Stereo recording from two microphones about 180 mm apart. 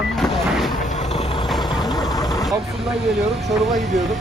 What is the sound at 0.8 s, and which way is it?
Vehicle, 40° left (ahead or behind).